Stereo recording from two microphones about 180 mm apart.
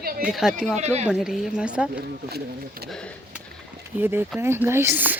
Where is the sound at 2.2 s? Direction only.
60° right (ahead or behind).